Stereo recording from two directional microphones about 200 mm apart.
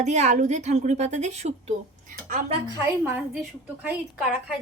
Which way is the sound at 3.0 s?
10° right (ahead or behind).